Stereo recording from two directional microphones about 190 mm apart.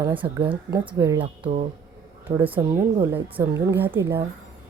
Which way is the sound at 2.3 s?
30° right (ahead or behind).